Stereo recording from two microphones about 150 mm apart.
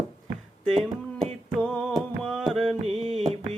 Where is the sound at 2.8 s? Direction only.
40° right (ahead or behind).